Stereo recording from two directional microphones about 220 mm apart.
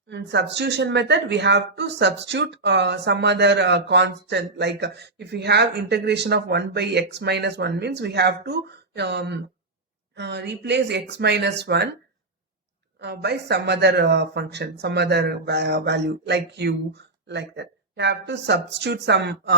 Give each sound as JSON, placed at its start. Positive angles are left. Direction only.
{"t": 0.1, "sound": "a woman's voice", "side_deg": -50}
{"t": 13.0, "sound": "a woman's voice", "side_deg": -50}